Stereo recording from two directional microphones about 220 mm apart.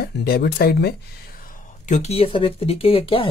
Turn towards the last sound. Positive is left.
turn(degrees=25)  # may be behind; listen again after turning